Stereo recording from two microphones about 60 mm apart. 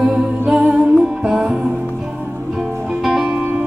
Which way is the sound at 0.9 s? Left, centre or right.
Centre.